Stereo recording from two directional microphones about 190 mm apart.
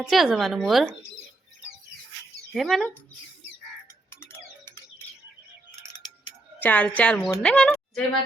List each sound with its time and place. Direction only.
0.0 s speech: centre (ahead or behind)
2.6 s speech: centre (ahead or behind)
4.1 s a sound: 10° left (ahead or behind)
6.6 s a woman's voice: 10° left (ahead or behind)